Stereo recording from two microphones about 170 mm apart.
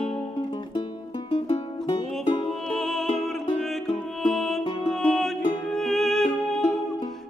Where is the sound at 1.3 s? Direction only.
30° left (ahead or behind).